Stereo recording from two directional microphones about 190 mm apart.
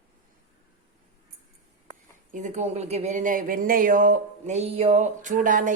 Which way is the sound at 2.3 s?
40° right (ahead or behind).